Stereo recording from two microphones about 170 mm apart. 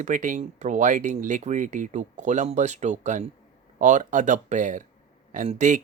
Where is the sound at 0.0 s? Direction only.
50° right (ahead or behind).